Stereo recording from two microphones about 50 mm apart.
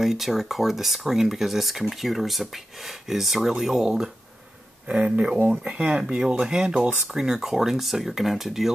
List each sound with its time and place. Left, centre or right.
0.0 s speech: centre
4.8 s speech: right
7.1 s speech: centre